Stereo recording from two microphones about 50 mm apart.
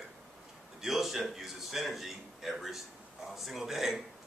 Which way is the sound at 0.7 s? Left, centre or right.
Centre.